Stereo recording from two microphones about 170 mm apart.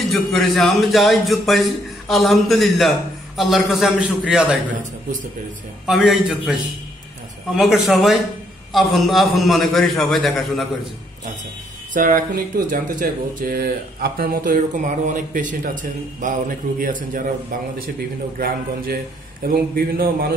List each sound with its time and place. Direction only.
0.0 s speech: centre (ahead or behind)
5.9 s speech: centre (ahead or behind)
7.5 s speech: centre (ahead or behind)
11.9 s speech: 55° right (ahead or behind)
19.4 s speech: 60° right (ahead or behind)